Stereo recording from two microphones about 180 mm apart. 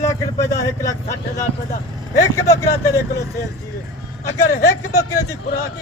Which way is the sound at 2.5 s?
20° left (ahead or behind).